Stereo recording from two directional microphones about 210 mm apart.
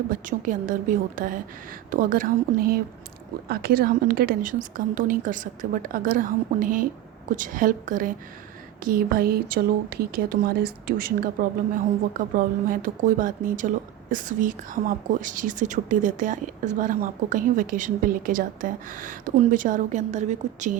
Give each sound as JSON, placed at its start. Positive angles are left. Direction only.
{"t": 0.1, "sound": "speech", "side_deg": -40}